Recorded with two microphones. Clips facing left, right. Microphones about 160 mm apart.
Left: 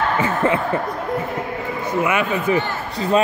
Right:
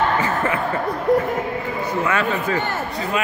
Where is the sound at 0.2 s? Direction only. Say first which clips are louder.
Left 3 dB; 25° left (ahead or behind).